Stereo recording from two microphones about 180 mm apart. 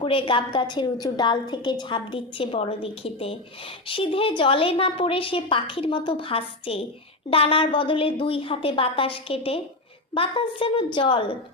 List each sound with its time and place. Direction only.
0.0 s a woman's voice: 30° left (ahead or behind)